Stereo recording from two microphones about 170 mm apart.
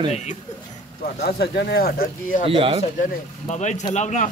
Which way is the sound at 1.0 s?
65° left (ahead or behind).